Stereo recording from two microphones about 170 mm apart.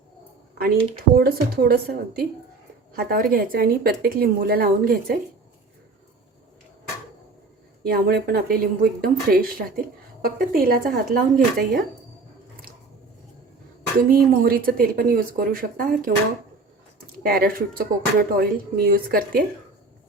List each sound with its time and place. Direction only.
0.6 s speech: 60° right (ahead or behind)
7.9 s speech: 65° right (ahead or behind)
14.1 s speech: 60° right (ahead or behind)
17.2 s speech: 60° right (ahead or behind)